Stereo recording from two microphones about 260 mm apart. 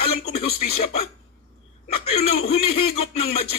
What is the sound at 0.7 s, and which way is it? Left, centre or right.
Music, left.